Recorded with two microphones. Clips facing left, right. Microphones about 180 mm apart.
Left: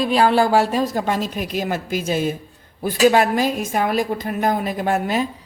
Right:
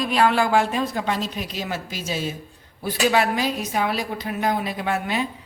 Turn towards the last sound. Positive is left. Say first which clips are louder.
# left 4 dB
turn(degrees=45)  # may be behind; listen again after turning